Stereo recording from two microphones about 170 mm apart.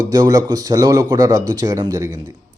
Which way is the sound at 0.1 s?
20° right (ahead or behind).